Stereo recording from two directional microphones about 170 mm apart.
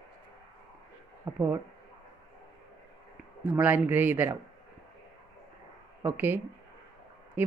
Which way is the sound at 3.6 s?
10° right (ahead or behind).